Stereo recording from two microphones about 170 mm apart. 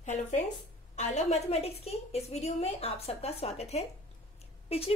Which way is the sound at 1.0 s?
40° left (ahead or behind).